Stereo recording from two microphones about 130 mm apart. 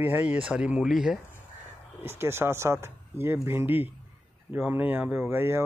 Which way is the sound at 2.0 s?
20° right (ahead or behind).